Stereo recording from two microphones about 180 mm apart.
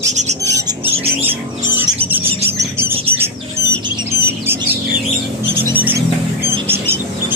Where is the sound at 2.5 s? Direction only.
15° right (ahead or behind).